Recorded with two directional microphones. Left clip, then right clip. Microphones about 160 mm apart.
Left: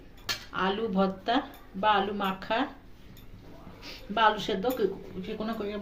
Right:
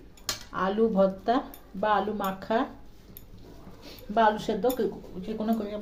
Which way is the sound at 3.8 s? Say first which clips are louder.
Right 1 dB; 65° right (ahead or behind).